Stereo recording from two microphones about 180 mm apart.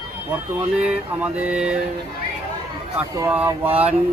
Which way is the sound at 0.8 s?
5° right (ahead or behind).